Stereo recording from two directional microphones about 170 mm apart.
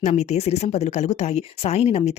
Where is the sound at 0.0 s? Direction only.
40° left (ahead or behind).